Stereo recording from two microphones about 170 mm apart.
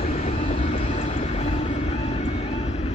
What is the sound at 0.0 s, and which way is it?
Vehicle, 40° left (ahead or behind).